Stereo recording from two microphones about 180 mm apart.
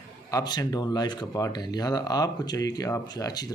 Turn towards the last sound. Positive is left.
turn(degrees=20)  # may be behind; listen again after turning